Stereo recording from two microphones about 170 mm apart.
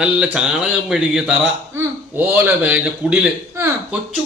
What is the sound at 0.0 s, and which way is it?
A man's voice, 5° right (ahead or behind).